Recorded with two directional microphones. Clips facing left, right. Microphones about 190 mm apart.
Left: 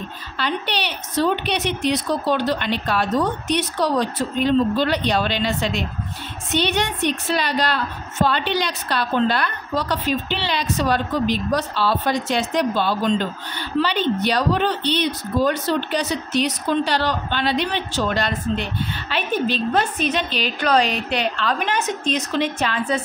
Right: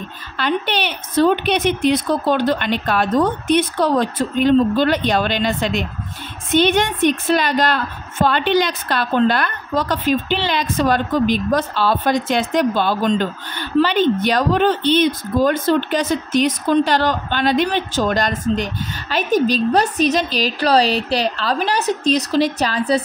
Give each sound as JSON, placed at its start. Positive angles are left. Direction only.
{"t": 0.4, "sound": "a woman's voice", "side_deg": -55}